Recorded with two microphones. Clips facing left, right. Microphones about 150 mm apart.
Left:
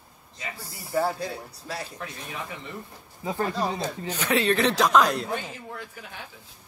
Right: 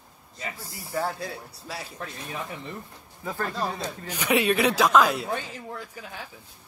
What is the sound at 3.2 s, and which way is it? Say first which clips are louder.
Speech: left 3 dB; 15° left (ahead or behind).